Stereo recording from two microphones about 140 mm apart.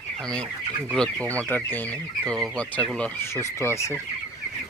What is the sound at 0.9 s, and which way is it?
Speech, 5° left (ahead or behind).